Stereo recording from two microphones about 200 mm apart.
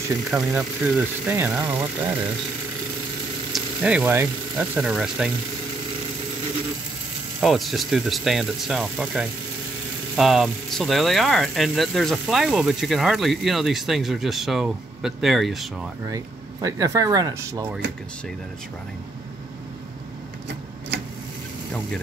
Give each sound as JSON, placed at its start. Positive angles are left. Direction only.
{"t": 0.3, "sound": "speech", "side_deg": -5}
{"t": 3.5, "sound": "speech", "side_deg": -5}
{"t": 7.3, "sound": "speech", "side_deg": 0}
{"t": 16.6, "sound": "speech", "side_deg": -15}